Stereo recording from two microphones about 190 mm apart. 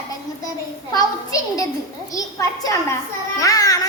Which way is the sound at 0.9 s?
20° left (ahead or behind).